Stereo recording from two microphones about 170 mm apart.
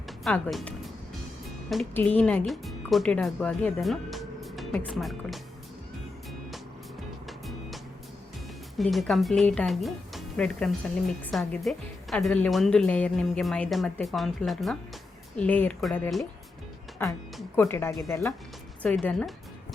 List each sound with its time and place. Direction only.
0.3 s speech: 5° left (ahead or behind)
1.9 s speech: 10° left (ahead or behind)
7.3 s music: centre (ahead or behind)
8.8 s a woman's voice: centre (ahead or behind)
17.0 s speech: 15° left (ahead or behind)